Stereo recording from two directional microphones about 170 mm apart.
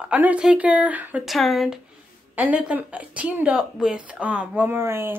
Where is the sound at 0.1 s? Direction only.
10° right (ahead or behind).